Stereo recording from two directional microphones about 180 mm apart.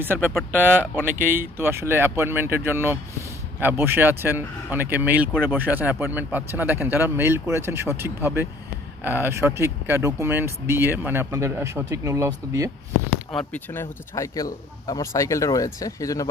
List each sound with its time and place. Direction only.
0.0 s speech: 10° right (ahead or behind)
13.4 s speech: 10° left (ahead or behind)